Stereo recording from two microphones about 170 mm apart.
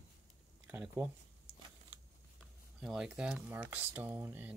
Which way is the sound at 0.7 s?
10° right (ahead or behind).